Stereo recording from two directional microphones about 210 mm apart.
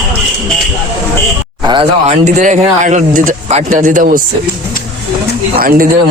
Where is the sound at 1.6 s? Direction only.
25° right (ahead or behind); by 4.2 s 40° right (ahead or behind).